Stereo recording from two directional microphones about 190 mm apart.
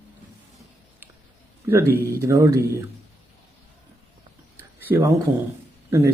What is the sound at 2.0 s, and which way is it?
Speech, 15° right (ahead or behind).